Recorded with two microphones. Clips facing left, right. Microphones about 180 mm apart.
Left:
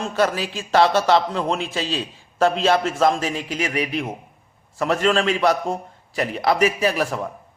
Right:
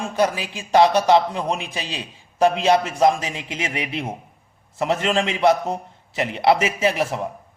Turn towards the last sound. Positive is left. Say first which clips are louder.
# even
turn(degrees=-20)  # may be behind; listen again after turning